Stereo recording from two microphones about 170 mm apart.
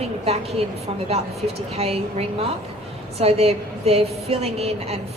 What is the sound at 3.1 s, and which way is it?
A woman's voice, 35° right (ahead or behind).